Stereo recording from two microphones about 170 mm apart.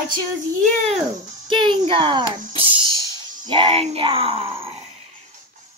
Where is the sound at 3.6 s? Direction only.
35° right (ahead or behind).